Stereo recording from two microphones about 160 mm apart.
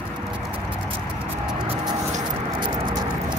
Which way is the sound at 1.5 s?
25° right (ahead or behind).